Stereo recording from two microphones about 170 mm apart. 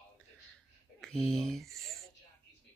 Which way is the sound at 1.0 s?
5° left (ahead or behind).